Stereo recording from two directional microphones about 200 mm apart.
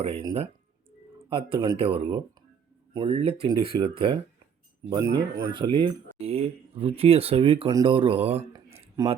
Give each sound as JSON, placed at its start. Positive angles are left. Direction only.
{"t": 0.0, "sound": "speech", "side_deg": -30}
{"t": 1.3, "sound": "speech", "side_deg": -25}